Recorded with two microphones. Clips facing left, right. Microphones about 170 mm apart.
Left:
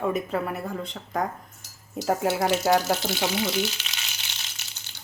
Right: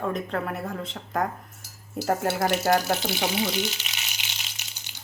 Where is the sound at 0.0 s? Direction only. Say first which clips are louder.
Left 2 dB; 5° left (ahead or behind).